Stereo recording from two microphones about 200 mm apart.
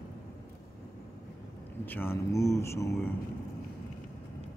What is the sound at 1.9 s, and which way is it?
Speech, 10° left (ahead or behind).